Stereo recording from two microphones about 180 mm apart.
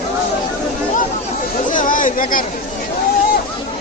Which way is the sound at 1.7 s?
45° left (ahead or behind).